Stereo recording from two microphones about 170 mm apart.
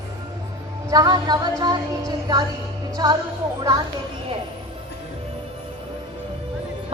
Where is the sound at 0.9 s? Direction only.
25° right (ahead or behind).